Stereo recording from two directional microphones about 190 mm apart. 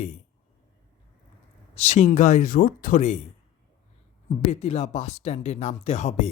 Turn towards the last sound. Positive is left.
turn(degrees=35)  # may be behind; listen again after turning